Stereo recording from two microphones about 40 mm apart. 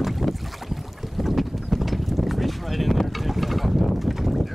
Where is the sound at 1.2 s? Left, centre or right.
Centre.